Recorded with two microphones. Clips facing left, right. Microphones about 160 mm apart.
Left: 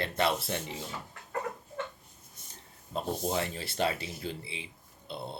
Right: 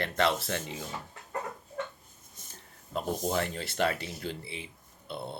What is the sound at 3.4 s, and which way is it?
Speech, 55° right (ahead or behind).